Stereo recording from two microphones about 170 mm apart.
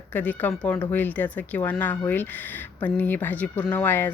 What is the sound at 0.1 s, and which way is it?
Speech, 10° left (ahead or behind).